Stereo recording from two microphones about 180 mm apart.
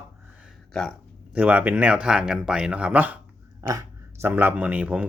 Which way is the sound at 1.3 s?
10° right (ahead or behind).